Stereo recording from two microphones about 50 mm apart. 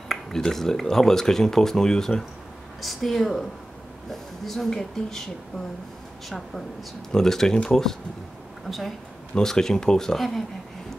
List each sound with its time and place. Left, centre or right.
0.1 s speech: centre